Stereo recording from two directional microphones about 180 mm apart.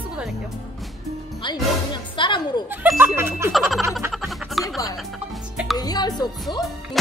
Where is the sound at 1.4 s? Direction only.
25° left (ahead or behind).